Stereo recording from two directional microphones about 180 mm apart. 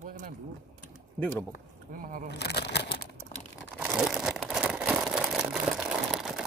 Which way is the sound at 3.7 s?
5° right (ahead or behind).